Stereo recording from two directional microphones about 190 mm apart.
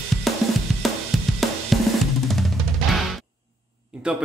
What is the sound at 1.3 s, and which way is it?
Drum kit, centre (ahead or behind).